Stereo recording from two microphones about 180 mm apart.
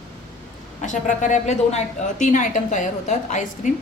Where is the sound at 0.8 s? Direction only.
45° left (ahead or behind).